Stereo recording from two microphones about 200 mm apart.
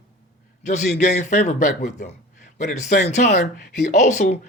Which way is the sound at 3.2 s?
55° left (ahead or behind).